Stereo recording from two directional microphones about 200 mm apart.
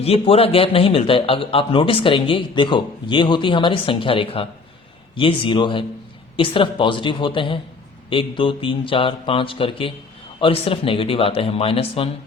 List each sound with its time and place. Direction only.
0.0 s a man's voice: 30° left (ahead or behind)